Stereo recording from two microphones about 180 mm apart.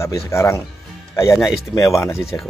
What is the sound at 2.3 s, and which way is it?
Speech, 15° left (ahead or behind).